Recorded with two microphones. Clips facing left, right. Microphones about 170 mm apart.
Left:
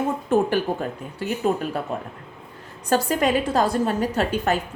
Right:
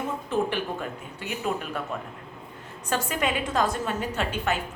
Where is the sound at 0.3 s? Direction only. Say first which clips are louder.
Left 6 dB; 40° left (ahead or behind).